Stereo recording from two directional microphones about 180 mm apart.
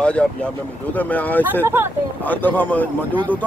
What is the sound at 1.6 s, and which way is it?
Speech, 15° right (ahead or behind).